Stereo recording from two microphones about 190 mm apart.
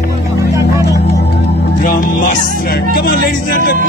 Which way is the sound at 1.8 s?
45° left (ahead or behind).